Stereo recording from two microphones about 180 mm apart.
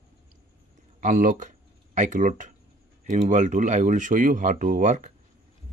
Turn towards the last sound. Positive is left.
turn(degrees=-45)  # may be behind; listen again after turning